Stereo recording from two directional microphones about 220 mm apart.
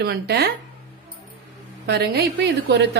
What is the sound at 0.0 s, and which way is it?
Speech, 45° right (ahead or behind).